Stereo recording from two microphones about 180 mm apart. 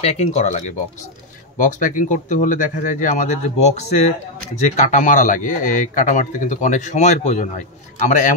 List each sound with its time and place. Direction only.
0.0 s a man's voice: 35° left (ahead or behind)